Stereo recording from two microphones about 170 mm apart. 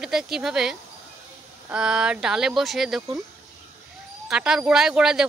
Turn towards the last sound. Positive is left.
turn(degrees=-5)  # may be behind; listen again after turning